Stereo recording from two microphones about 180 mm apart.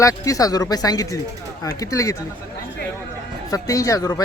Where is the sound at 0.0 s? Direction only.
20° left (ahead or behind).